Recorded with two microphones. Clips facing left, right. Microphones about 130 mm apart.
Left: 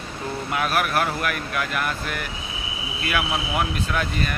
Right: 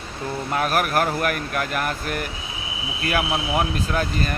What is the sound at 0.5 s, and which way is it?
Speech, 40° right (ahead or behind).